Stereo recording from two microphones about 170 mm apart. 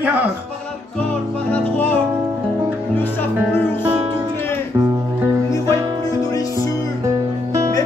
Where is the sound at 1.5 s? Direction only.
10° left (ahead or behind).